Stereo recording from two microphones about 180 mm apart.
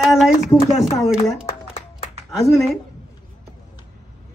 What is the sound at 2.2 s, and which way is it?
Speech, centre (ahead or behind).